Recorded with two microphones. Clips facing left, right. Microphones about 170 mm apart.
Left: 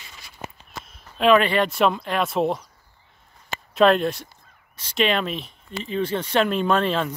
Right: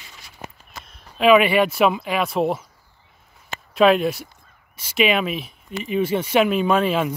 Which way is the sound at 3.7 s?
5° right (ahead or behind).